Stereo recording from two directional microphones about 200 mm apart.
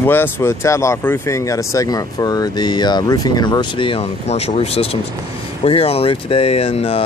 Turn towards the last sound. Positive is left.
turn(degrees=30)  # may be behind; listen again after turning